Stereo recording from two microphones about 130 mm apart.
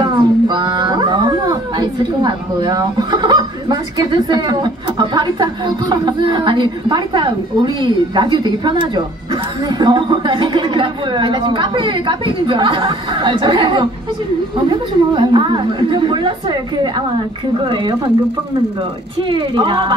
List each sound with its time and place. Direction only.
0.0 s speech: 35° right (ahead or behind)
19.2 s speech: 40° right (ahead or behind)